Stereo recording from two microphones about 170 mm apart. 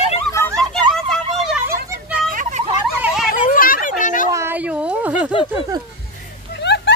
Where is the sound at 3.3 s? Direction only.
55° left (ahead or behind).